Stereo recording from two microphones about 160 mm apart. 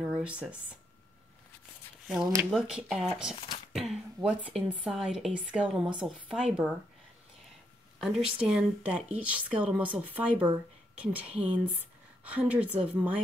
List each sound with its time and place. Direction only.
0.2 s speech: 10° right (ahead or behind)
2.0 s a woman's voice: centre (ahead or behind)
3.3 s speech: 35° left (ahead or behind)
3.7 s a sound: centre (ahead or behind)
4.6 s a woman's voice: 5° right (ahead or behind)
8.0 s speech: 5° right (ahead or behind)